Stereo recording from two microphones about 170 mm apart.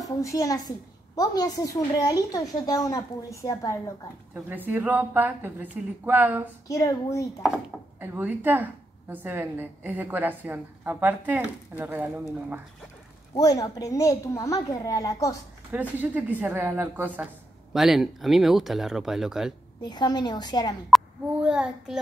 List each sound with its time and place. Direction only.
0.2 s a woman's voice: 20° left (ahead or behind)
4.5 s a woman's voice: 10° right (ahead or behind)
6.7 s a woman's voice: 20° left (ahead or behind)
7.4 s a woman's voice: 10° right (ahead or behind)
13.3 s a woman's voice: 20° left (ahead or behind)
15.7 s a woman's voice: 10° right (ahead or behind)
19.8 s a woman's voice: 25° left (ahead or behind)
20.9 s child singing: 5° right (ahead or behind)